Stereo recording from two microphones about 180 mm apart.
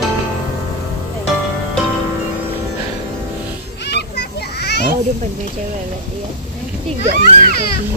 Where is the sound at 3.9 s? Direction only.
70° left (ahead or behind).